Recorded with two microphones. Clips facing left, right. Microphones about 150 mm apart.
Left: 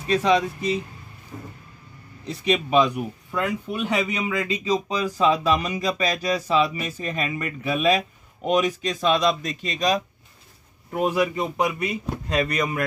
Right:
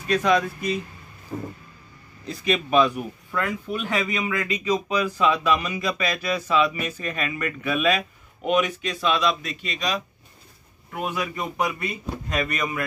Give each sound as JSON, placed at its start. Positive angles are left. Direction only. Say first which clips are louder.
{"t": 0.0, "sound": "speech", "louder": "left 1 dB", "side_deg": 25}
{"t": 1.3, "sound": "vehicle", "louder": "right 7 dB", "side_deg": -50}
{"t": 2.4, "sound": "speech", "louder": "even", "side_deg": 15}
{"t": 11.3, "sound": "speech", "louder": "left 3 dB", "side_deg": 20}
{"t": 12.3, "sound": "speech", "louder": "left 3 dB", "side_deg": 35}